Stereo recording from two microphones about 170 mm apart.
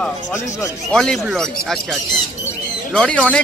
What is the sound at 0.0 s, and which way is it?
Speech, 15° left (ahead or behind).